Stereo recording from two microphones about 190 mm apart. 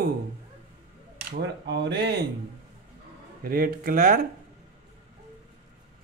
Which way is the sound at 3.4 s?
50° right (ahead or behind).